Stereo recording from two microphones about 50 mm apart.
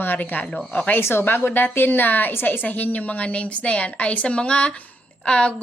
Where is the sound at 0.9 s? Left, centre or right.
Left; by 5.5 s centre.